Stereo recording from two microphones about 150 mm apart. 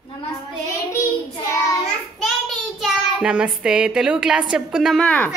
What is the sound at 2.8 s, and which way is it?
A woman's voice, 5° right (ahead or behind).